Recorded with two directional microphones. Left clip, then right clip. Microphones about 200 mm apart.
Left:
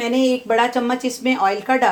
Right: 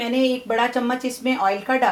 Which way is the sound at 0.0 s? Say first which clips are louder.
Left 3 dB; 45° left (ahead or behind).